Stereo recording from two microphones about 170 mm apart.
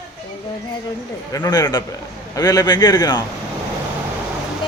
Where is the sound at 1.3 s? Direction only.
20° left (ahead or behind).